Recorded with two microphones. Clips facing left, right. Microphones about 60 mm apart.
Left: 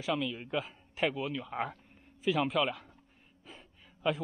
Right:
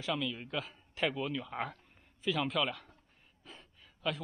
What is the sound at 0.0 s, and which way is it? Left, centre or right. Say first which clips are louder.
A man's voice: left 2 dB; centre.